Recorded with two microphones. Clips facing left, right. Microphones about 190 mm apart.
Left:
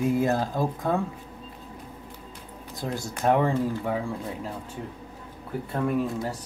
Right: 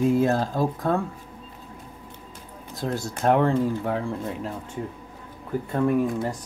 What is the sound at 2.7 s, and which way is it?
Speech, 15° left (ahead or behind).